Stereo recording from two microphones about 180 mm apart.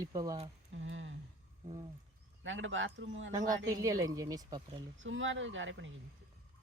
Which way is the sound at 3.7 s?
20° right (ahead or behind).